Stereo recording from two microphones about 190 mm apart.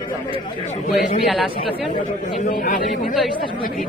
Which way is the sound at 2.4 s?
45° left (ahead or behind).